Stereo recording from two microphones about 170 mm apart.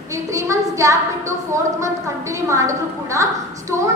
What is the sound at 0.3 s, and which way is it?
Speech, 20° right (ahead or behind).